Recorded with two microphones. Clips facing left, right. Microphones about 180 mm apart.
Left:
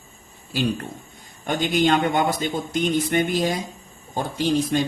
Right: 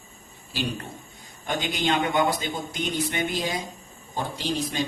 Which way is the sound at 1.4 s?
50° left (ahead or behind).